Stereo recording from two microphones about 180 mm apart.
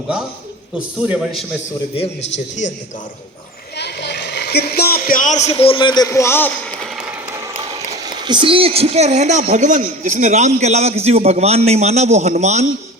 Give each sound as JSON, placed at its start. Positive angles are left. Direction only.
{"t": 0.9, "sound": "a man's voice", "side_deg": -5}
{"t": 3.8, "sound": "speech", "side_deg": 70}
{"t": 8.0, "sound": "speech", "side_deg": -25}